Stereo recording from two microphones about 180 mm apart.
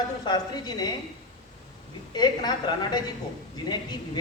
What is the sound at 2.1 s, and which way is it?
Speech, 25° left (ahead or behind).